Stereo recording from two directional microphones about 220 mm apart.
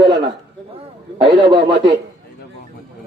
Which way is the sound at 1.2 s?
20° right (ahead or behind).